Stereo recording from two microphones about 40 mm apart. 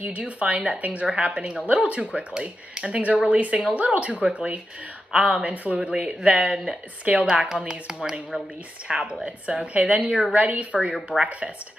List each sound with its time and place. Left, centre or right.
0.0 s speech: right
3.0 s speech: right
9.8 s speech: right